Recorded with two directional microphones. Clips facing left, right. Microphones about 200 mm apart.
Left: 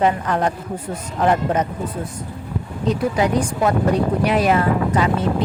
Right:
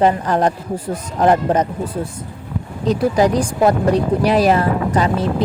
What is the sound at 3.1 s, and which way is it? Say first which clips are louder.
Speech: right 4 dB; 35° right (ahead or behind).